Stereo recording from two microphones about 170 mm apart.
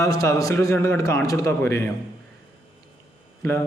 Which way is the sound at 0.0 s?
20° left (ahead or behind).